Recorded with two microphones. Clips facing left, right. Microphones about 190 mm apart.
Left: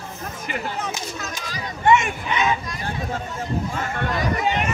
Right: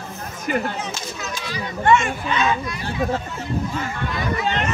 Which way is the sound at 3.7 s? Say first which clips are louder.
Left 1 dB; 50° left (ahead or behind).